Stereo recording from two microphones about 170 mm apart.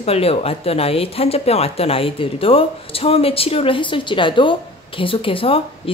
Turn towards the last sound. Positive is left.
turn(degrees=30)  # may be behind; listen again after turning